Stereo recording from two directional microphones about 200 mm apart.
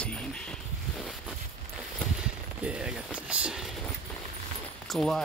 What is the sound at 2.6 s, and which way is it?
Speech, 5° right (ahead or behind).